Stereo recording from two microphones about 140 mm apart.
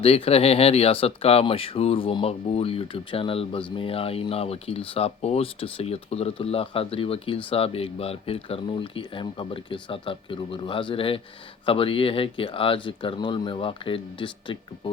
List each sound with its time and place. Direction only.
0.0 s speech: 45° left (ahead or behind)